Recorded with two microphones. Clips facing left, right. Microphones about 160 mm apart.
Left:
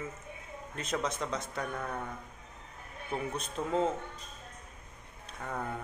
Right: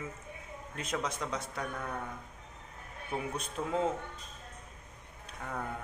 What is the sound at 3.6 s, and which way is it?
Speech, 5° left (ahead or behind).